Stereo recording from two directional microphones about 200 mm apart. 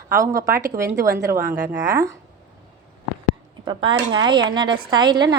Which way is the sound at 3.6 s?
25° right (ahead or behind).